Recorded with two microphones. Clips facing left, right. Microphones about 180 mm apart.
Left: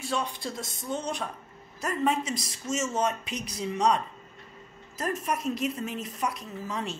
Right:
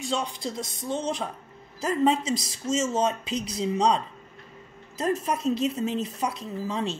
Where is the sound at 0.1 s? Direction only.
20° right (ahead or behind).